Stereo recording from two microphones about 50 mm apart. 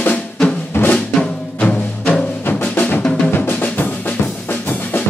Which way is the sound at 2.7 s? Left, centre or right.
Left.